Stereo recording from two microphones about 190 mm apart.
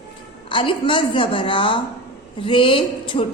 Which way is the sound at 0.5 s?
25° left (ahead or behind).